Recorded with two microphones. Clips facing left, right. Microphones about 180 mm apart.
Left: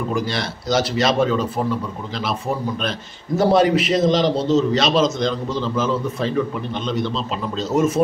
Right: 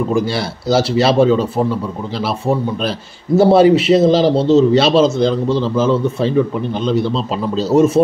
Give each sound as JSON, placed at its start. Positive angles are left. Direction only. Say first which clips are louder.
{"t": 0.1, "sound": "a man's voice", "louder": "right 6 dB", "side_deg": -30}